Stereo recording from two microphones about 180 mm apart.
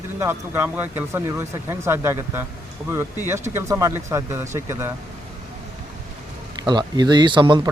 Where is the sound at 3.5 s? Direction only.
15° right (ahead or behind).